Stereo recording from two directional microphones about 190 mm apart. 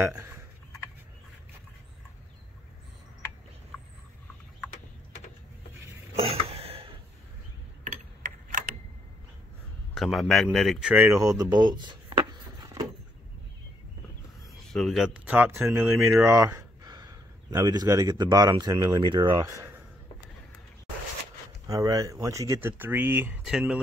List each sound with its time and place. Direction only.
0.0 s speech: 15° right (ahead or behind)
6.1 s cough: 30° right (ahead or behind)
9.9 s speech: centre (ahead or behind); by 12.8 s 20° right (ahead or behind)
14.7 s a man's voice: centre (ahead or behind); by 19.8 s 15° right (ahead or behind)
21.6 s speech: 20° right (ahead or behind); by 23.8 s 5° right (ahead or behind)